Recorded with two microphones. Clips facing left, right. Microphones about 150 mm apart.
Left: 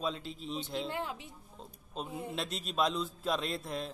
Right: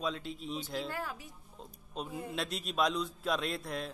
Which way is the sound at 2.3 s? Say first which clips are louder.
Even; centre (ahead or behind).